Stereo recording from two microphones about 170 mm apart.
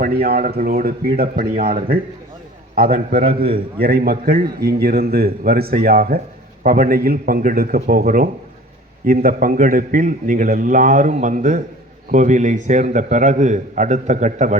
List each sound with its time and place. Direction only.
0.0 s a man's voice: 60° right (ahead or behind); by 14.6 s 45° right (ahead or behind)